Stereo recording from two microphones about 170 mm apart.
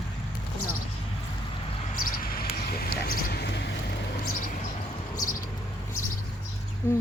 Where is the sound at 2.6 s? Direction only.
65° left (ahead or behind).